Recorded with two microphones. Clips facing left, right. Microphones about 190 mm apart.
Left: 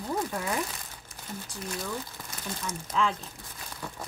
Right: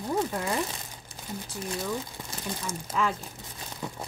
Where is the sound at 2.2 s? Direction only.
25° right (ahead or behind).